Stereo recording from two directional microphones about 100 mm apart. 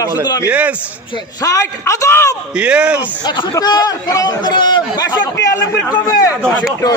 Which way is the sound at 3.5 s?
40° left (ahead or behind).